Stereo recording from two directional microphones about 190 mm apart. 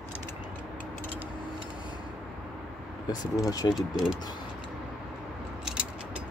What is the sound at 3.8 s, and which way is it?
Speech, centre (ahead or behind).